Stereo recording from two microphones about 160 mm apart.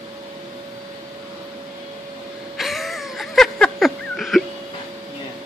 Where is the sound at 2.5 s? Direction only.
Centre (ahead or behind).